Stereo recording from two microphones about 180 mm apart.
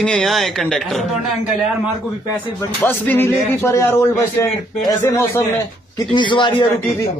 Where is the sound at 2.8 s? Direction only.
10° left (ahead or behind).